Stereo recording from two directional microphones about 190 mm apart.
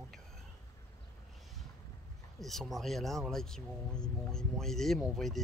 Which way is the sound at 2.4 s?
Centre (ahead or behind).